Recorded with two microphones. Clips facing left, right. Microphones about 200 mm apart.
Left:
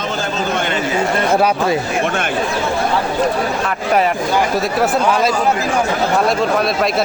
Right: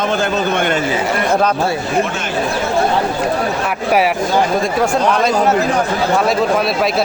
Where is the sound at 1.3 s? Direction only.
10° left (ahead or behind).